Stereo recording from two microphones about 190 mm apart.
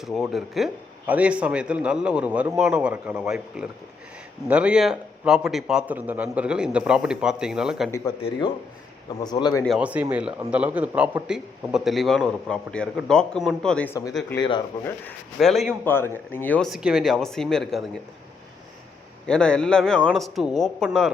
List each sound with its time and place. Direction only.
0.0 s a man's voice: centre (ahead or behind)
7.9 s speech: 15° left (ahead or behind)
9.2 s speech: 20° left (ahead or behind)
9.6 s a man's voice: 5° right (ahead or behind)
15.9 s a man's voice: 10° left (ahead or behind)
19.2 s a man's voice: 5° left (ahead or behind)